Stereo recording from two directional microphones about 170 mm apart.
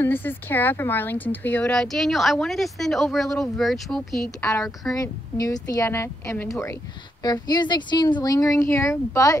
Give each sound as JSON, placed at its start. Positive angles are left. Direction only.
{"t": 0.0, "sound": "speech", "side_deg": 10}
{"t": 4.9, "sound": "a woman's voice", "side_deg": 20}